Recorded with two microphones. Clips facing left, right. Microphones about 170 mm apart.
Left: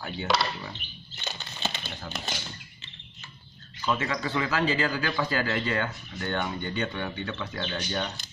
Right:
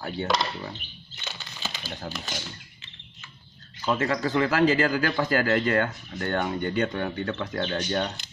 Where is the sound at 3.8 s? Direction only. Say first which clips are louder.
Right 4 dB; 35° right (ahead or behind).